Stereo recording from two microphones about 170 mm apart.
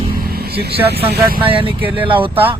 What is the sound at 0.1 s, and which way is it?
Speech, 60° right (ahead or behind).